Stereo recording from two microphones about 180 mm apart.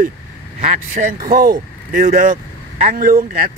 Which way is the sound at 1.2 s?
55° right (ahead or behind).